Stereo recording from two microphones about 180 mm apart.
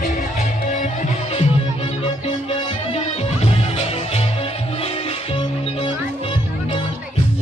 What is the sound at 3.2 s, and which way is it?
Music, 35° left (ahead or behind).